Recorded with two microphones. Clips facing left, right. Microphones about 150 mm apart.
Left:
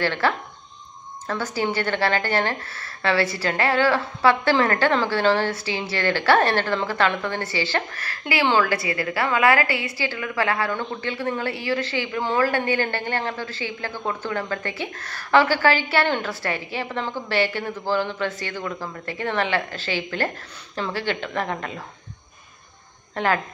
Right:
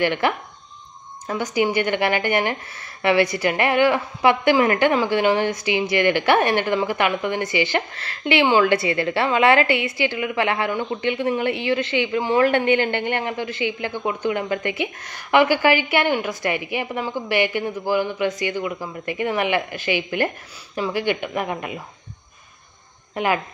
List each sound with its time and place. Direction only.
0.0 s speech: 15° right (ahead or behind)
23.1 s speech: 15° right (ahead or behind)